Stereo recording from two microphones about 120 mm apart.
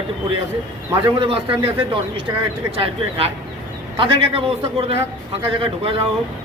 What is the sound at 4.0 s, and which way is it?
Speech, 45° right (ahead or behind).